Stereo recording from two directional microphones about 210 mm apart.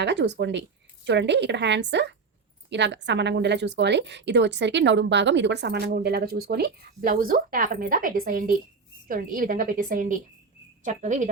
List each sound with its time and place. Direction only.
0.0 s a woman's voice: 55° right (ahead or behind); by 11.3 s 35° right (ahead or behind)